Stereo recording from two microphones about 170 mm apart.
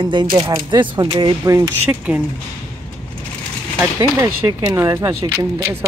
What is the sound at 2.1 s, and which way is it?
Speech, 10° right (ahead or behind).